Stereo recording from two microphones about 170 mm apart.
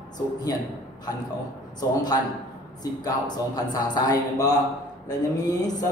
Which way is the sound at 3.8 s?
25° left (ahead or behind).